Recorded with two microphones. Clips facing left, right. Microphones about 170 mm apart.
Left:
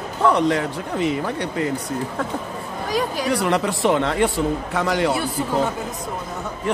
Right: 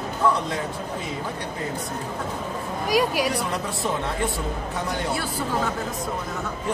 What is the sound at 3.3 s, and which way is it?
A man's voice, 75° left (ahead or behind).